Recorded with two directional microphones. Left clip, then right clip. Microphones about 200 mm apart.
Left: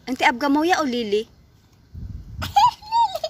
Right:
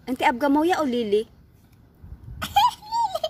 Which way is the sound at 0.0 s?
Centre (ahead or behind).